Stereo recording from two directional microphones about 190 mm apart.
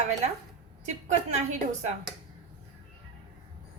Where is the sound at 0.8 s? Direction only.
40° right (ahead or behind).